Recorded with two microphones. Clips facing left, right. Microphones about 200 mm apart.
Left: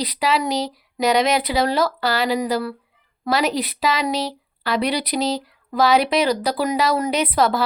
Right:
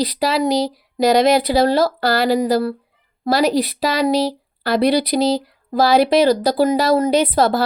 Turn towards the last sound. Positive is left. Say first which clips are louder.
# right 4 dB
turn(degrees=-30)  # may be behind; listen again after turning